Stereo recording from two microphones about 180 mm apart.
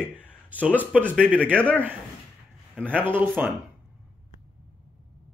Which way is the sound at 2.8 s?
10° right (ahead or behind).